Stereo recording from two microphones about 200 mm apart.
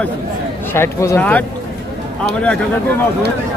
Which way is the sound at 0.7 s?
15° left (ahead or behind).